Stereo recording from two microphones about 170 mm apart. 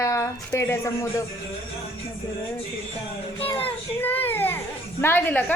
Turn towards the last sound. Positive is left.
turn(degrees=10)  # may be behind; listen again after turning